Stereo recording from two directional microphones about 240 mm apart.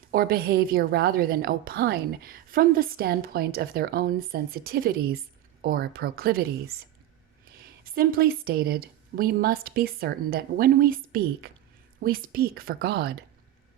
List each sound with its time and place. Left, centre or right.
0.1 s a woman's voice: right
7.9 s a woman's voice: right